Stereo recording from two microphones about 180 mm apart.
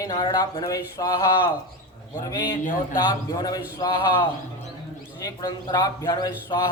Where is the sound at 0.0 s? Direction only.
20° left (ahead or behind).